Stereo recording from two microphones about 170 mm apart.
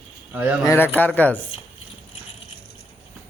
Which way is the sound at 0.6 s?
15° left (ahead or behind).